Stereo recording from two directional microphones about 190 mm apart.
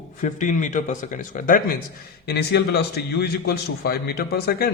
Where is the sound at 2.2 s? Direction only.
60° left (ahead or behind).